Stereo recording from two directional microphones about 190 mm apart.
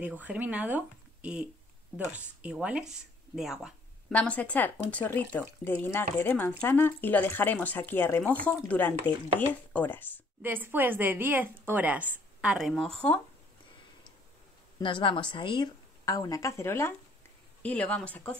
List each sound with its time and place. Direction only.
0.0 s a woman's voice: 10° right (ahead or behind); by 10.2 s 10° left (ahead or behind)
10.4 s a woman's voice: 10° right (ahead or behind)
14.8 s a woman's voice: 25° left (ahead or behind); by 18.4 s 5° left (ahead or behind)